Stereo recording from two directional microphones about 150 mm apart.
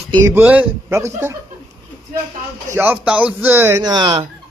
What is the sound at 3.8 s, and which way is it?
Speech, 30° right (ahead or behind).